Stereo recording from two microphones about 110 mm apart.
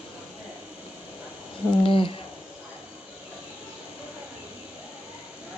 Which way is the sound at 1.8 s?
50° left (ahead or behind).